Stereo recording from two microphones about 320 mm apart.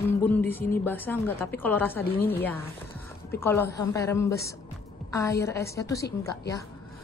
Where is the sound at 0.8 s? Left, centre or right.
Centre.